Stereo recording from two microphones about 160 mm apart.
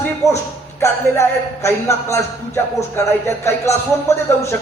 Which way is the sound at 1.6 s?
15° left (ahead or behind).